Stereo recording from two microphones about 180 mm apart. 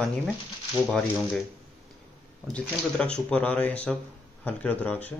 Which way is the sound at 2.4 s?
5° left (ahead or behind).